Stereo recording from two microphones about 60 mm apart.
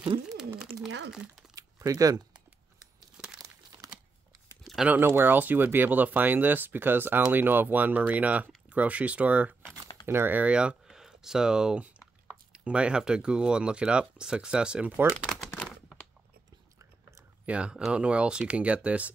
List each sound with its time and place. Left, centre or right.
0.6 s a sound: centre
1.5 s typing: right
4.8 s speech: right
10.0 s speech: right
10.3 s speech: centre
10.9 s speech: centre
17.5 s speech: centre